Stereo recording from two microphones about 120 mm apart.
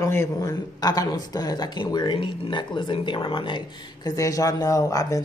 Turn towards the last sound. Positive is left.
turn(degrees=30)  # may be behind; listen again after turning